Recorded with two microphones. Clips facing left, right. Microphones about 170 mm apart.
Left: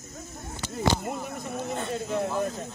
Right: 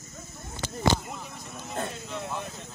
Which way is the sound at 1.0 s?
50° left (ahead or behind).